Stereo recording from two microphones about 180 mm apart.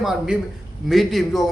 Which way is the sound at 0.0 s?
Centre (ahead or behind).